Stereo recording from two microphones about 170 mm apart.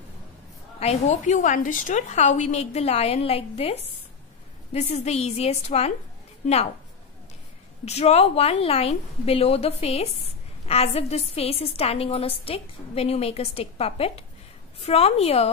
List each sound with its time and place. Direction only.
0.7 s a woman's voice: 40° left (ahead or behind)
7.8 s a woman's voice: 40° left (ahead or behind)